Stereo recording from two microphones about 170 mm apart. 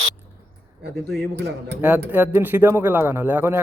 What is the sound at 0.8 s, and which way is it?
A man's voice, 75° right (ahead or behind).